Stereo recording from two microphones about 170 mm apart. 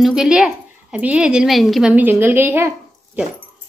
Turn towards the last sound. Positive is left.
turn(degrees=-15)  # may be behind; listen again after turning